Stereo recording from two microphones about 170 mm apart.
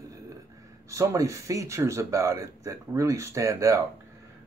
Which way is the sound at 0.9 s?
20° right (ahead or behind).